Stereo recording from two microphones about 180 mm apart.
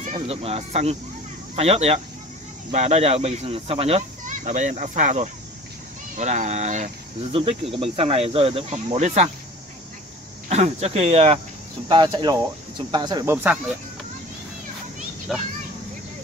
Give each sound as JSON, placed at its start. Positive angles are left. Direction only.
{"t": 0.0, "sound": "speech", "side_deg": -35}
{"t": 10.5, "sound": "speech", "side_deg": -35}
{"t": 11.9, "sound": "speech", "side_deg": -25}
{"t": 15.3, "sound": "a child's voice", "side_deg": 0}